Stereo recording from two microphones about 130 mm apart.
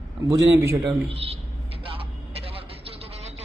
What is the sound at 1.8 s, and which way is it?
Vehicle, 45° right (ahead or behind).